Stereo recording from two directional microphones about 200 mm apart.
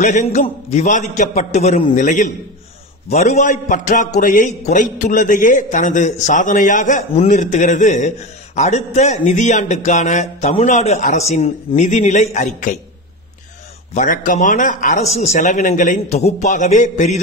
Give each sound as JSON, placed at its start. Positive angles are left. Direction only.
{"t": 0.0, "sound": "a man's voice", "side_deg": 35}
{"t": 13.9, "sound": "a man's voice", "side_deg": 40}